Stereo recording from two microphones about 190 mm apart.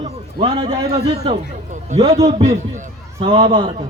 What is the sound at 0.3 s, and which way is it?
A man's voice, 30° right (ahead or behind).